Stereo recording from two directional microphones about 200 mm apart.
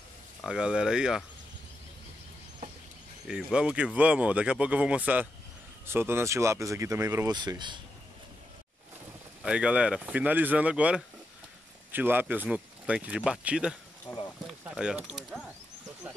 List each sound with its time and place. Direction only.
0.4 s speech: 5° right (ahead or behind)
3.3 s speech: 5° right (ahead or behind); by 7.8 s 20° right (ahead or behind)
9.4 s speech: 5° right (ahead or behind)
14.1 s a sound: 20° left (ahead or behind)
14.6 s speech: 5° right (ahead or behind)